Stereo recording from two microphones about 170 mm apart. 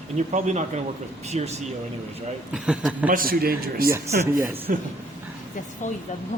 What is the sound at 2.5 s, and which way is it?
Speech, 5° right (ahead or behind).